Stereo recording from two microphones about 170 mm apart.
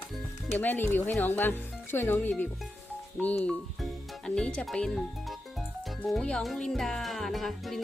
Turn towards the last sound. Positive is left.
turn(degrees=0)  # may be behind; listen again after turning